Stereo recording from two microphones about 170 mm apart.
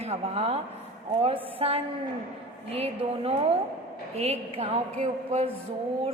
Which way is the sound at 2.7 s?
35° right (ahead or behind).